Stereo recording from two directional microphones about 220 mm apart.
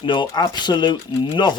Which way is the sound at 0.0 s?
20° left (ahead or behind).